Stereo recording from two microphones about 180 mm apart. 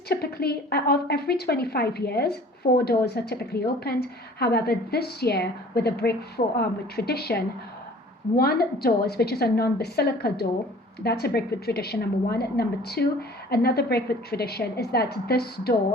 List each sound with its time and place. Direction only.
0.1 s a woman's voice: 60° left (ahead or behind)